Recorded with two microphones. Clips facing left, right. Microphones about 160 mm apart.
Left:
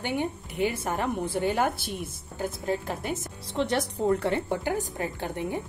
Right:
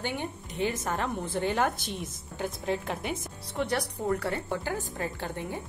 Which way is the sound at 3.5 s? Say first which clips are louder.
Left 3 dB; 25° left (ahead or behind).